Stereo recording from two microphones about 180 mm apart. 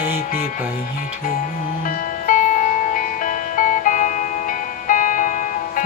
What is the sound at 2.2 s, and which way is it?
Music, 45° left (ahead or behind).